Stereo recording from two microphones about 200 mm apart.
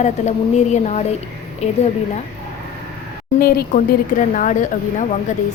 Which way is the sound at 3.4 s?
50° left (ahead or behind).